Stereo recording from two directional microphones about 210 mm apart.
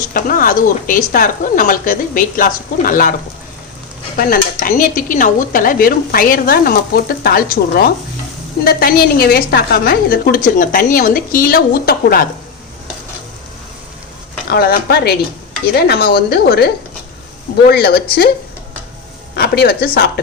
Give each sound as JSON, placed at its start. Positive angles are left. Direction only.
{"t": 0.1, "sound": "speech", "side_deg": 40}
{"t": 4.2, "sound": "speech", "side_deg": 40}
{"t": 14.5, "sound": "speech", "side_deg": 50}
{"t": 19.4, "sound": "speech", "side_deg": 50}